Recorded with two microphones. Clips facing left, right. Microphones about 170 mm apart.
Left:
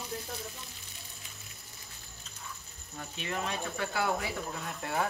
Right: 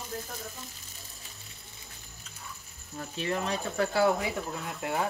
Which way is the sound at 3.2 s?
35° right (ahead or behind).